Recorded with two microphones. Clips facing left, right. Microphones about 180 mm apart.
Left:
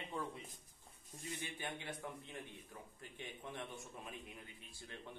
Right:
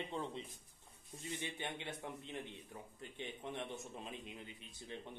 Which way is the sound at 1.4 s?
20° right (ahead or behind).